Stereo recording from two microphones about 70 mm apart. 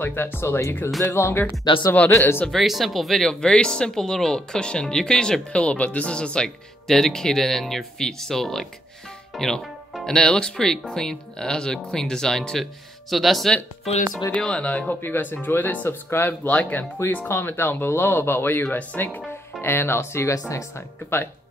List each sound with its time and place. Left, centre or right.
0.0 s speech: left
2.5 s speech: centre
14.3 s speech: centre; by 16.3 s left
16.4 s speech: left
20.3 s speech: left